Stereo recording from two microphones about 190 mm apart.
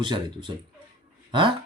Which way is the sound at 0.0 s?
25° right (ahead or behind).